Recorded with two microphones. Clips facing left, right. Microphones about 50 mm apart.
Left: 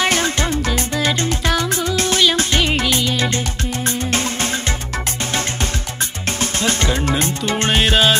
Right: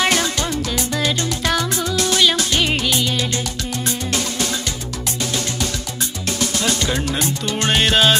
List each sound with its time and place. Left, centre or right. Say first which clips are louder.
0.1 s music: left 1 dB; left
2.0 s music: even; left
2.6 s music: left 1 dB; centre
3.8 s music: left 3 dB; left
7.1 s music: left 3 dB; left
7.7 s music: even; centre